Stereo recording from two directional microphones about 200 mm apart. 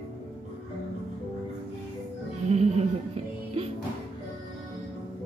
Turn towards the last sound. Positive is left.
turn(degrees=-30)  # may be behind; listen again after turning